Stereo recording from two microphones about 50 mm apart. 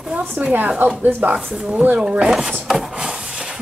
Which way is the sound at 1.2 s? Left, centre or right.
Centre.